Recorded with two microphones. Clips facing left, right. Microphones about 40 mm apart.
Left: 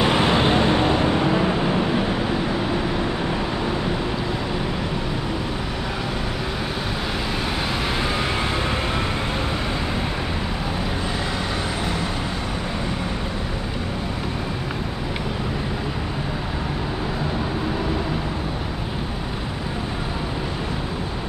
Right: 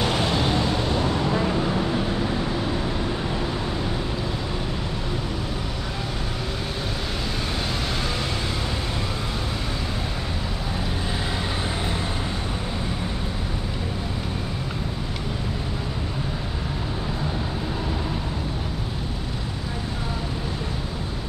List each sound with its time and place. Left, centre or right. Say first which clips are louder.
0.0 s vehicle: left 5 dB; left